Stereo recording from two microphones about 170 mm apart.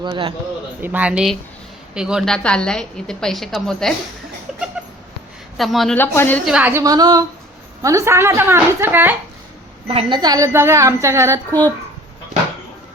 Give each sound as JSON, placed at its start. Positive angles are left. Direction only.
{"t": 0.0, "sound": "a man's voice", "side_deg": -30}
{"t": 0.8, "sound": "a woman's voice", "side_deg": -10}
{"t": 4.8, "sound": "cat", "side_deg": -5}
{"t": 5.5, "sound": "a woman's voice", "side_deg": 0}
{"t": 6.0, "sound": "a woman's voice", "side_deg": 10}
{"t": 6.4, "sound": "a woman's voice", "side_deg": -5}
{"t": 9.8, "sound": "a woman's voice", "side_deg": -35}
{"t": 10.2, "sound": "a woman's voice", "side_deg": -20}